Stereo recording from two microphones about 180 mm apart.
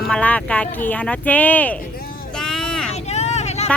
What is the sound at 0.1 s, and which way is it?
Speech, 5° left (ahead or behind).